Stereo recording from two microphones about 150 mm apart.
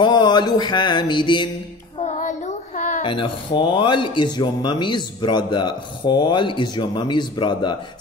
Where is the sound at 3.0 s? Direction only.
35° left (ahead or behind).